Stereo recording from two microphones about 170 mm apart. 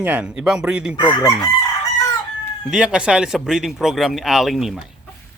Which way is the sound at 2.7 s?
5° right (ahead or behind).